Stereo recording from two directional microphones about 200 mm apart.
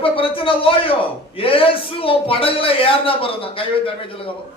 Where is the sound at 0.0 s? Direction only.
25° left (ahead or behind).